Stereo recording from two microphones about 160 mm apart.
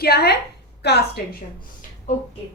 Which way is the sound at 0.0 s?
85° left.